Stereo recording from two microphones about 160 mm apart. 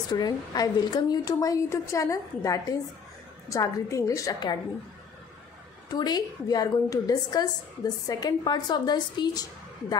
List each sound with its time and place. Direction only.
0.1 s a woman's voice: 25° left (ahead or behind)
5.9 s a woman's voice: 25° left (ahead or behind)